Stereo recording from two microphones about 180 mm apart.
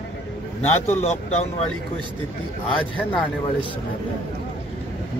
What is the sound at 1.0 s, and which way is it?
Speech, 35° left (ahead or behind).